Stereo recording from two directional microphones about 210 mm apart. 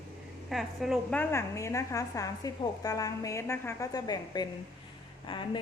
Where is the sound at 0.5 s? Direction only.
Centre (ahead or behind).